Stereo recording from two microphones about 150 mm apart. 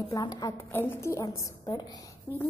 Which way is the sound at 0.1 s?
25° left (ahead or behind).